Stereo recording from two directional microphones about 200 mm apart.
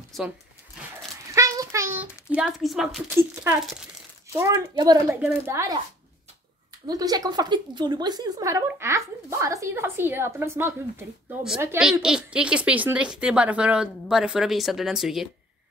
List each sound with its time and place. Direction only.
1.3 s a sound: 15° right (ahead or behind)
2.3 s a child's voice: centre (ahead or behind)
4.4 s a woman's voice: 20° right (ahead or behind)
6.9 s a woman's voice: 20° right (ahead or behind); by 15.2 s centre (ahead or behind)